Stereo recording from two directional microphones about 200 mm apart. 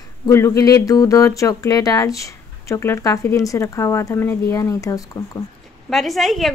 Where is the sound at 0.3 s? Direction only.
15° left (ahead or behind).